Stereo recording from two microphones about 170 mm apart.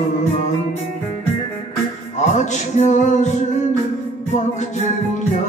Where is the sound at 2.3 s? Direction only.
45° left (ahead or behind).